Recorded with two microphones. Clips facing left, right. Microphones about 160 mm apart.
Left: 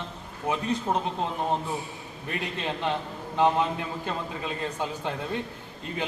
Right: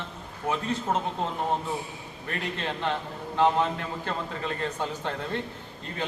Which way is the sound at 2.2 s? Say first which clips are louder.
Left 1 dB; 15° left (ahead or behind).